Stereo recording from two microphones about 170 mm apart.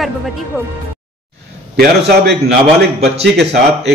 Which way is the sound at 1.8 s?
75° right (ahead or behind).